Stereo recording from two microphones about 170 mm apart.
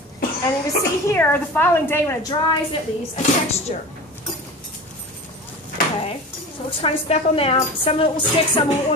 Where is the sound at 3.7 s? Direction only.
40° left (ahead or behind).